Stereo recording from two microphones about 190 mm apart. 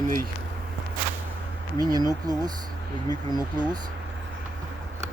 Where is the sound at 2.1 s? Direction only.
20° right (ahead or behind).